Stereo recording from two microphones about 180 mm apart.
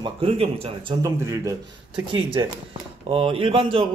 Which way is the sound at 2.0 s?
30° right (ahead or behind).